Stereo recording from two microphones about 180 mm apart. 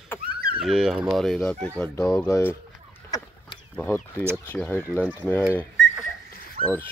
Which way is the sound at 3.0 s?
20° left (ahead or behind).